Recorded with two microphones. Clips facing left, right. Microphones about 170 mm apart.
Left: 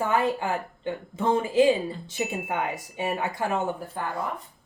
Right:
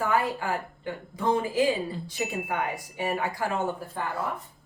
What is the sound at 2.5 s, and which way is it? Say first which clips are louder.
A woman's voice: left 1 dB; 20° left (ahead or behind).